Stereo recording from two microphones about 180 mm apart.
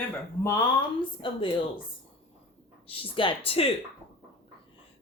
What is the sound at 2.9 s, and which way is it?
Speech, 30° left (ahead or behind).